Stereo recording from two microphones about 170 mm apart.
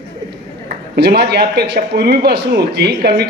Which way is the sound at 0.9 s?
70° right (ahead or behind).